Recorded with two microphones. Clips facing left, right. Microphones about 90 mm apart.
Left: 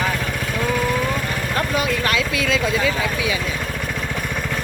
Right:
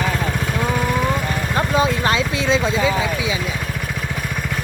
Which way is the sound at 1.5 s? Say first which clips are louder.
Right 4 dB; 25° right (ahead or behind).